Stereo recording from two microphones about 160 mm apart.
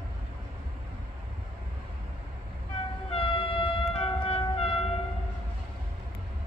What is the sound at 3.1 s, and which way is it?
Vehicle, 35° left (ahead or behind).